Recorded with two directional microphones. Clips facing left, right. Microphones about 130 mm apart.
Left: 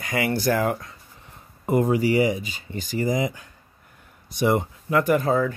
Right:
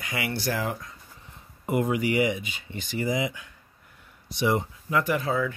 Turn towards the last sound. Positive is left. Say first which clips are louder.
# left 6 dB
turn(degrees=45)  # may be behind; listen again after turning